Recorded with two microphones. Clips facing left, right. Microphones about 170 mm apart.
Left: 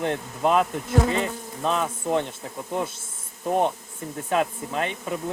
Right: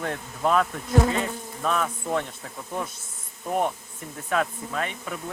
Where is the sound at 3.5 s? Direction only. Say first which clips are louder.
Left 3 dB; 20° left (ahead or behind).